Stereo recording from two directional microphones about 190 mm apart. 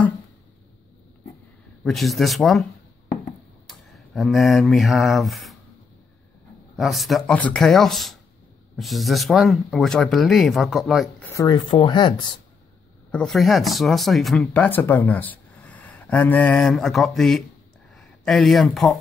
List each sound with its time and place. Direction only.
1.9 s speech: centre (ahead or behind)
3.6 s a sound: centre (ahead or behind)
6.8 s speech: centre (ahead or behind)
11.2 s speech: 20° left (ahead or behind)
13.1 s speech: centre (ahead or behind)